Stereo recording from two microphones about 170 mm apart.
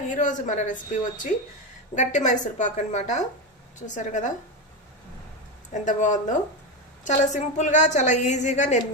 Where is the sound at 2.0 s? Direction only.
45° left (ahead or behind).